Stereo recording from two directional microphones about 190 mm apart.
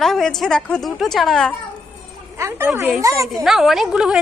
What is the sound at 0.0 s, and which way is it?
A woman's voice, centre (ahead or behind).